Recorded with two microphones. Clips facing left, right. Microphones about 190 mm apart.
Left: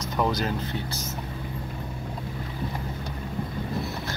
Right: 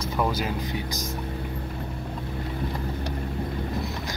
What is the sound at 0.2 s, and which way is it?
Speech, 10° right (ahead or behind).